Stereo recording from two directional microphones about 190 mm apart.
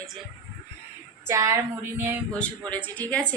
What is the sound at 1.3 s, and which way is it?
Child singing, 15° right (ahead or behind).